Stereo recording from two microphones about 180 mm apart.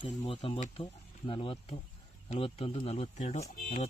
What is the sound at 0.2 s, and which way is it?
Speech, 30° left (ahead or behind).